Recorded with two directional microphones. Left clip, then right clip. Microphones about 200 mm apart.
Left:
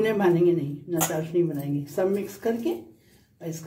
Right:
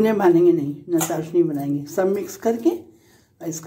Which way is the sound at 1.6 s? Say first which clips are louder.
Right 5 dB; 15° right (ahead or behind).